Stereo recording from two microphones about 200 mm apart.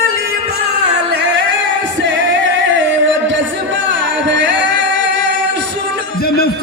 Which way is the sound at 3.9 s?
65° right (ahead or behind).